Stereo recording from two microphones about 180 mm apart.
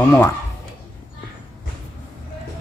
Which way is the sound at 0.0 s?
10° left (ahead or behind).